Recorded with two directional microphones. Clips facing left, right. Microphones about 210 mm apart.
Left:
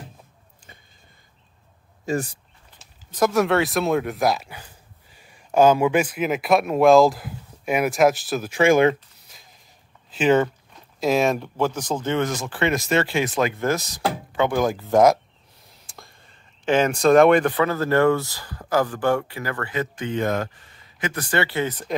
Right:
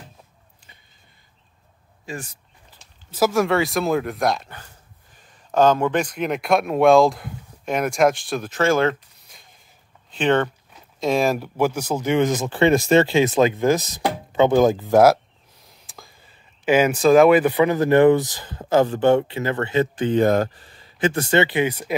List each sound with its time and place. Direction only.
3.1 s speech: 5° right (ahead or behind); by 8.9 s 15° left (ahead or behind)
9.3 s a sound: centre (ahead or behind)
10.1 s speech: 5° left (ahead or behind); by 14.9 s 25° right (ahead or behind)
14.9 s speech: 5° right (ahead or behind)